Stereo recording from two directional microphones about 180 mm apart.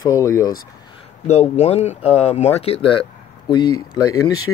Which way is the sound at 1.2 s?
35° left (ahead or behind).